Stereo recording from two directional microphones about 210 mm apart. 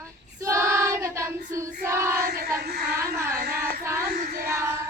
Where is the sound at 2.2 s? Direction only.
45° right (ahead or behind).